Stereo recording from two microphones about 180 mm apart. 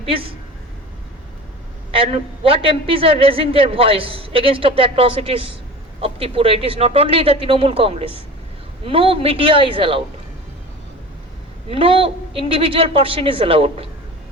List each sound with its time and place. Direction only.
0.0 s a man's voice: 30° right (ahead or behind)
1.9 s a woman's voice: 30° right (ahead or behind)
11.7 s a woman's voice: 30° right (ahead or behind)